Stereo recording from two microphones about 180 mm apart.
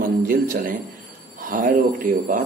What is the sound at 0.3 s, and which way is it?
Speech, 50° right (ahead or behind).